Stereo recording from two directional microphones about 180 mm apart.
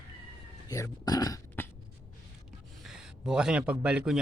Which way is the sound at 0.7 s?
20° left (ahead or behind).